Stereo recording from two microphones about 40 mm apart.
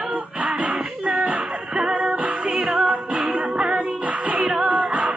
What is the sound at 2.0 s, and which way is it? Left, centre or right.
Music, right.